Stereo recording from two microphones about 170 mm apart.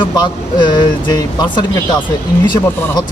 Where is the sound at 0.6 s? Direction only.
25° left (ahead or behind).